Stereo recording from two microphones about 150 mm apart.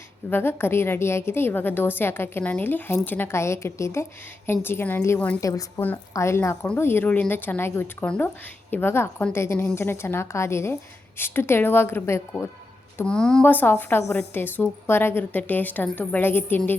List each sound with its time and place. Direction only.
0.3 s a woman's voice: 15° left (ahead or behind)